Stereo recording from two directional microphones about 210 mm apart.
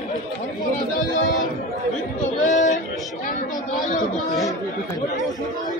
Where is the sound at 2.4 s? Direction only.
35° left (ahead or behind).